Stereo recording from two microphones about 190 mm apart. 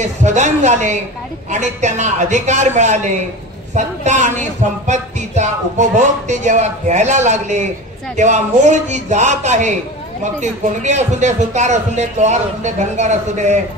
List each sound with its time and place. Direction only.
0.0 s speech: 40° right (ahead or behind)